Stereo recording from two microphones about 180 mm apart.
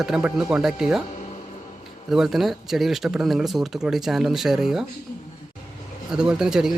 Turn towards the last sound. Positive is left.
turn(degrees=-5)  # may be behind; listen again after turning